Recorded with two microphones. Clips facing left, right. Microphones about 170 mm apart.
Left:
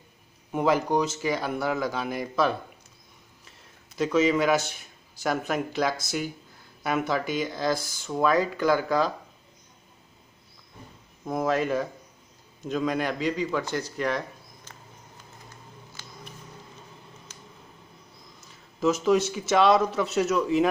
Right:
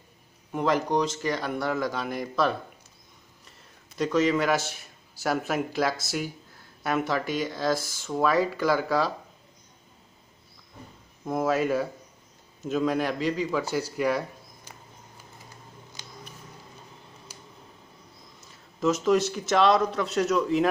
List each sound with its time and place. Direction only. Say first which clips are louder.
0.5 s a man's voice: left 2 dB; 10° left (ahead or behind)
4.0 s a man's voice: left 1 dB; centre (ahead or behind)
11.2 s a man's voice: right 1 dB; 5° right (ahead or behind)
16.0 s a sound: right 1 dB; 20° right (ahead or behind)
17.3 s a sound: right 1 dB; 10° right (ahead or behind)
18.8 s a man's voice: even; centre (ahead or behind)